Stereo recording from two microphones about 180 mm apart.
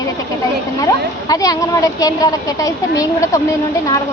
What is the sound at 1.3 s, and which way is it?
A child's voice, 20° left (ahead or behind).